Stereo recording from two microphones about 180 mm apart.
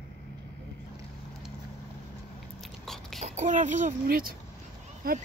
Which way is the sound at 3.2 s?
40° right (ahead or behind).